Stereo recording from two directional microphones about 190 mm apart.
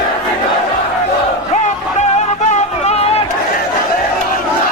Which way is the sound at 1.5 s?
40° left (ahead or behind).